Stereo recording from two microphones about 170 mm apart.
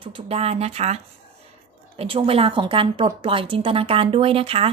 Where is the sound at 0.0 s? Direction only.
35° right (ahead or behind).